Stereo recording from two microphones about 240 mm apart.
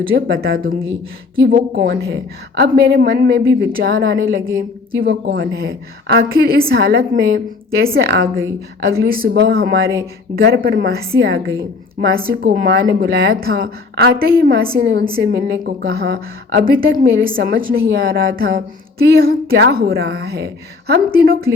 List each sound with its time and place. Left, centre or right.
0.1 s a woman's voice: right